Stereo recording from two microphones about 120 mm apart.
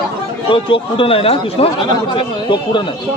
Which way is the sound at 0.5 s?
45° left (ahead or behind).